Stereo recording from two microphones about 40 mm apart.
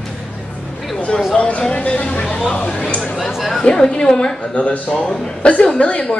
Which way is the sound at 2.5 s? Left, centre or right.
Left.